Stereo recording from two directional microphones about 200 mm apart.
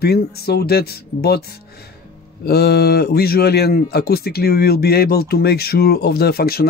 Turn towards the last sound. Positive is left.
turn(degrees=50)  # may be behind; listen again after turning